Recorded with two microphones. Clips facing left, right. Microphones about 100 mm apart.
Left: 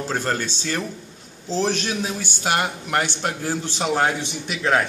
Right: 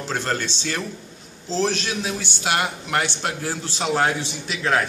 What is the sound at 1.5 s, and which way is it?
Speech, 15° left (ahead or behind).